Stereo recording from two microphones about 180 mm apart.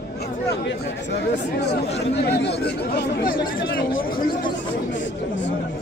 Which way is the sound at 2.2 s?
65° left (ahead or behind).